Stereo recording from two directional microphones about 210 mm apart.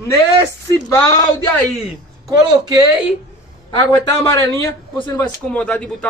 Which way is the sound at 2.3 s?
15° right (ahead or behind).